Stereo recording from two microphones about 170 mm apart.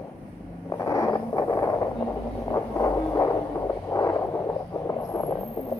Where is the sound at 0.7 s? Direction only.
20° left (ahead or behind).